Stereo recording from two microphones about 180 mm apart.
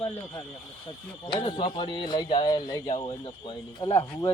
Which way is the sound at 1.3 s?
25° left (ahead or behind).